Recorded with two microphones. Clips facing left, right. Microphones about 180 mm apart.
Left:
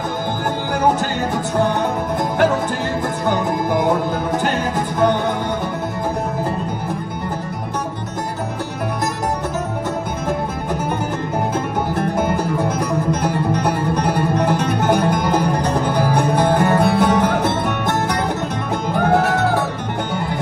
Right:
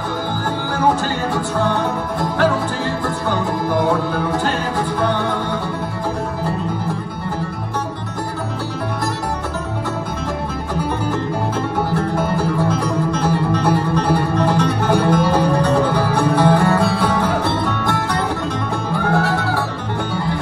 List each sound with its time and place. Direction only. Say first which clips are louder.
1.3 s music: left 1 dB; 15° left (ahead or behind)
3.3 s music: left 2 dB; 20° left (ahead or behind)
11.9 s music: even; 20° left (ahead or behind)